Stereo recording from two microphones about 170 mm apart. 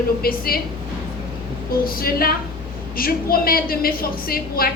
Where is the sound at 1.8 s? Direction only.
60° left (ahead or behind).